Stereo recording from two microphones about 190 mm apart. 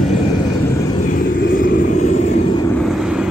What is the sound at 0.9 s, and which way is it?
Vehicle, 45° left (ahead or behind).